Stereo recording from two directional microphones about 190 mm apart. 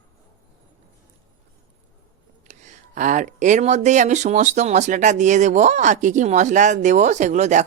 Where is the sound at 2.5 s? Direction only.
40° right (ahead or behind).